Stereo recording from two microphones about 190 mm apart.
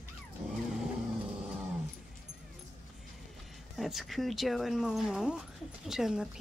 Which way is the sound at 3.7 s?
Centre (ahead or behind).